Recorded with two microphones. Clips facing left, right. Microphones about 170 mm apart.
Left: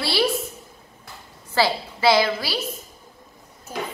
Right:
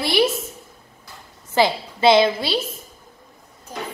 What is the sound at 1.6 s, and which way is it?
A woman's voice, 20° right (ahead or behind).